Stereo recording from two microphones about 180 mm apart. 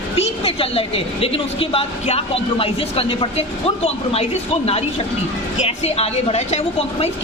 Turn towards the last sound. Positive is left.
turn(degrees=40)  # may be behind; listen again after turning